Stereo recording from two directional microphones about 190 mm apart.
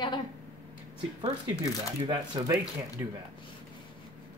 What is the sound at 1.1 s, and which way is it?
Speech, 25° right (ahead or behind).